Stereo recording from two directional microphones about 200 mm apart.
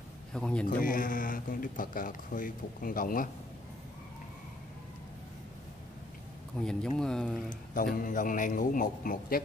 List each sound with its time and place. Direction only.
0.3 s a man's voice: 5° left (ahead or behind)
0.7 s a man's voice: 45° left (ahead or behind)
6.6 s speech: 5° left (ahead or behind)
7.7 s a man's voice: 45° left (ahead or behind)